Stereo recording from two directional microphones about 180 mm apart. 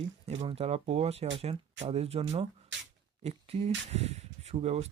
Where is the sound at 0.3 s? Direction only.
35° right (ahead or behind).